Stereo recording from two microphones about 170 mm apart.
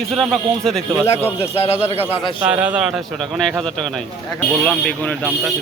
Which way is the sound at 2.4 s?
5° right (ahead or behind).